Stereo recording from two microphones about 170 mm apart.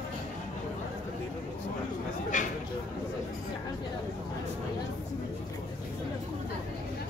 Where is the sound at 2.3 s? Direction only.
50° left (ahead or behind).